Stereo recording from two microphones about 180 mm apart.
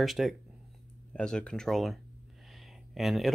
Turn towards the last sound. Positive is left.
turn(degrees=0)  # may be behind; listen again after turning